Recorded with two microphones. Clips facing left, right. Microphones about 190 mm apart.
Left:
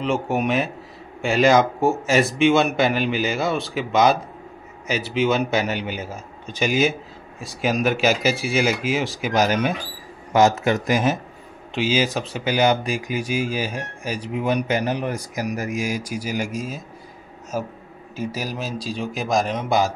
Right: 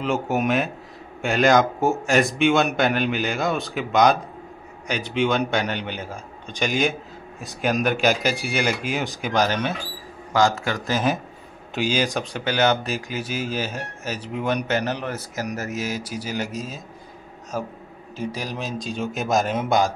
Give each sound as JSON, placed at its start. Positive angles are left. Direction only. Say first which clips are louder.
{"t": 0.0, "sound": "a man's voice", "louder": "left 1 dB", "side_deg": 0}
{"t": 10.3, "sound": "a man's voice", "louder": "left 4 dB", "side_deg": 20}
{"t": 11.7, "sound": "a man's voice", "louder": "left 2 dB", "side_deg": 5}